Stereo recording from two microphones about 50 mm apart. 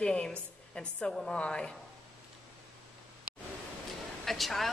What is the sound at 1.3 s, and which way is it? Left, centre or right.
Speech, left.